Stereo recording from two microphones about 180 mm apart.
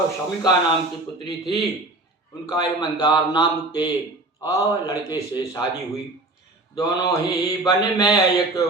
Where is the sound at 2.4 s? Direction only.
25° left (ahead or behind).